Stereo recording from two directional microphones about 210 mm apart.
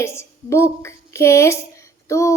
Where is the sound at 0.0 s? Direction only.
10° left (ahead or behind).